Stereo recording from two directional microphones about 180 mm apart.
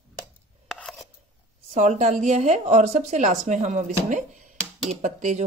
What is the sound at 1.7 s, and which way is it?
A woman's voice, 40° right (ahead or behind).